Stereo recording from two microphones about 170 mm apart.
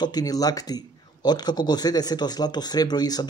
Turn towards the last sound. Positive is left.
turn(degrees=25)  # may be behind; listen again after turning